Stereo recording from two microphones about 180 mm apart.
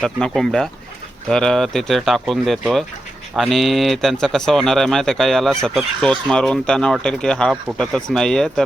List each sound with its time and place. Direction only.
0.0 s speech: 5° left (ahead or behind)